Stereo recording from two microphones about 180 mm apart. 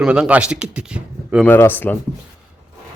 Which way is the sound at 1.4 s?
10° left (ahead or behind).